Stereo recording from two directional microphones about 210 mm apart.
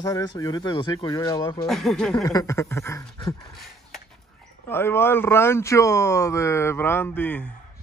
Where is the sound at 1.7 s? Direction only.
Centre (ahead or behind).